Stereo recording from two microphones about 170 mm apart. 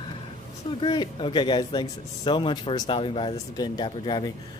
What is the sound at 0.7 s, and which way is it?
Speech, 30° left (ahead or behind).